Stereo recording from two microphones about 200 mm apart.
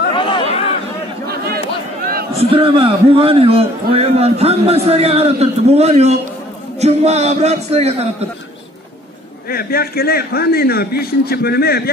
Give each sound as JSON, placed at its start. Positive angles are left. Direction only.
{"t": 0.1, "sound": "chatter", "side_deg": 25}
{"t": 2.3, "sound": "a man's voice", "side_deg": -25}
{"t": 9.5, "sound": "a man's voice", "side_deg": 50}